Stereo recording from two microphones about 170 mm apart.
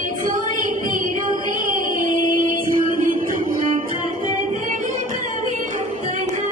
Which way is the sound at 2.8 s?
55° right (ahead or behind).